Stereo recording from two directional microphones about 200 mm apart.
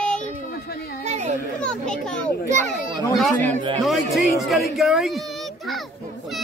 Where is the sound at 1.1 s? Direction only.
35° right (ahead or behind).